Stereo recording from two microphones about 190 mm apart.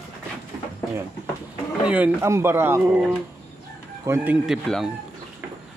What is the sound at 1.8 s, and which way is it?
Speech, 5° right (ahead or behind).